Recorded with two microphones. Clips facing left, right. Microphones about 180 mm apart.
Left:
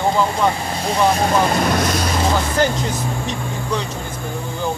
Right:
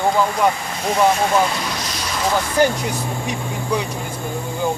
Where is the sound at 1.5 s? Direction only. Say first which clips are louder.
Left 8 dB; 55° left (ahead or behind).